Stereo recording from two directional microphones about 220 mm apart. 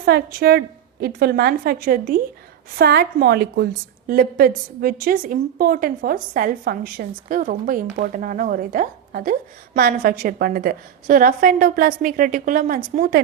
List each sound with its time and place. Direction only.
0.0 s a woman's voice: 45° right (ahead or behind)